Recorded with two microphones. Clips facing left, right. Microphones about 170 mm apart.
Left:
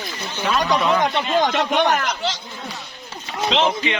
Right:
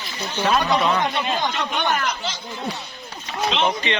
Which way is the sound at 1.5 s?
90° left.